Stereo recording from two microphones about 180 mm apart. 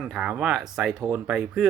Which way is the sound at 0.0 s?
5° right (ahead or behind).